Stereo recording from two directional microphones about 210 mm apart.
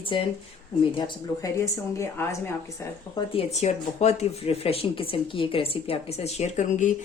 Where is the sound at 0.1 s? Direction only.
25° left (ahead or behind).